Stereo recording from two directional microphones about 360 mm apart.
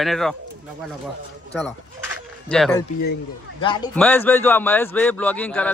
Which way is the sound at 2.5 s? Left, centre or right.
Centre.